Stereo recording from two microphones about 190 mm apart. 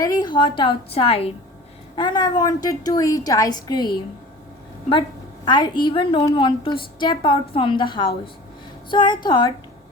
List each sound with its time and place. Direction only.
0.0 s a woman's voice: 20° left (ahead or behind)
5.5 s a woman's voice: 20° left (ahead or behind)